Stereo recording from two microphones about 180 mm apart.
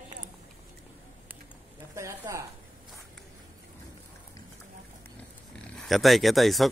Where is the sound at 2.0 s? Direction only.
15° right (ahead or behind).